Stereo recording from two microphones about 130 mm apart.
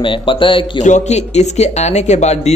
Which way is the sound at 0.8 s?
65° left (ahead or behind).